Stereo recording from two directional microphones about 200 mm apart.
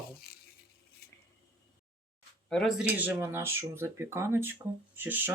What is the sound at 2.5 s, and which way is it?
Speech, centre (ahead or behind).